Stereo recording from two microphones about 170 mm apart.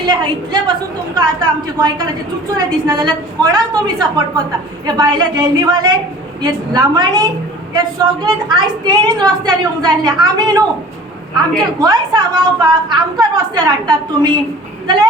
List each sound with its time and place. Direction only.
0.0 s a woman's voice: 25° right (ahead or behind)